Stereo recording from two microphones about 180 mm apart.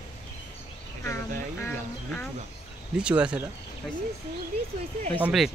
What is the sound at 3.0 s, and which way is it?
Speech, 5° right (ahead or behind).